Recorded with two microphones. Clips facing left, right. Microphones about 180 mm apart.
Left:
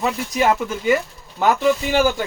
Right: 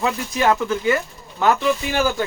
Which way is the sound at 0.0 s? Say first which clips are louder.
Left 1 dB; 10° left (ahead or behind).